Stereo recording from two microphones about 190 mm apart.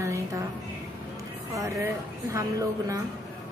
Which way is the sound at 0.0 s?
15° right (ahead or behind).